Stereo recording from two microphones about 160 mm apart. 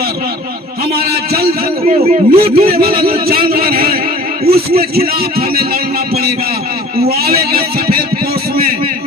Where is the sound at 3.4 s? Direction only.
70° right (ahead or behind).